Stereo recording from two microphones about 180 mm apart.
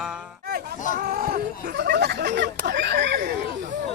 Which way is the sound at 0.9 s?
60° right (ahead or behind).